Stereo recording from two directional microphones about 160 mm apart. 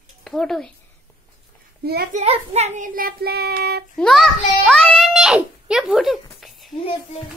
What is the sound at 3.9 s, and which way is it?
A child's voice, centre (ahead or behind).